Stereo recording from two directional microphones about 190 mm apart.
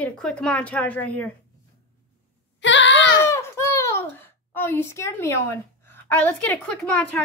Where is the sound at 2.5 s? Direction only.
70° left (ahead or behind).